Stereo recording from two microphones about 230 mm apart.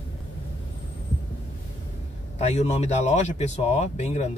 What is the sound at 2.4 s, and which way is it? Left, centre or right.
Speech, left.